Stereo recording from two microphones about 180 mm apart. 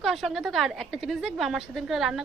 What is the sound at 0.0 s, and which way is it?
A woman's voice, centre (ahead or behind).